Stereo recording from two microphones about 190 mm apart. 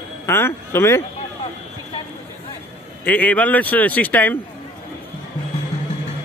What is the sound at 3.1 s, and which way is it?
A man's voice, 10° left (ahead or behind).